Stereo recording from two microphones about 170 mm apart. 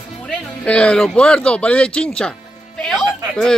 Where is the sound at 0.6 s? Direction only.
5° left (ahead or behind).